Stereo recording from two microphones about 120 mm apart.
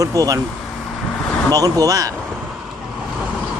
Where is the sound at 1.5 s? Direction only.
30° right (ahead or behind).